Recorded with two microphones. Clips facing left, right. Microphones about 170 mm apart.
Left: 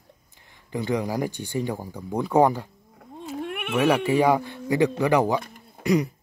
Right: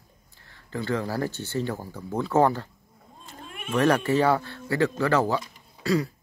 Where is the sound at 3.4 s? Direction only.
70° left (ahead or behind).